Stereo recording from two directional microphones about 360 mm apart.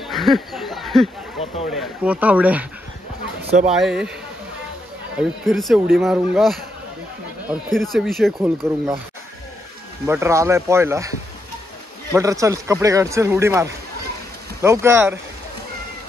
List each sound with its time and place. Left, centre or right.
0.0 s a sound: centre
1.4 s speech: centre
1.7 s speech: centre
3.6 s speech: centre
5.1 s speech: centre
10.0 s a man's voice: centre
12.1 s a man's voice: centre